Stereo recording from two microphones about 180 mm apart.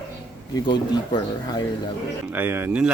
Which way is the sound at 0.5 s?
25° left (ahead or behind).